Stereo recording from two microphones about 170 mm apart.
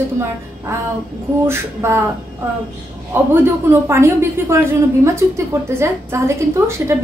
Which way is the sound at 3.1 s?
15° right (ahead or behind).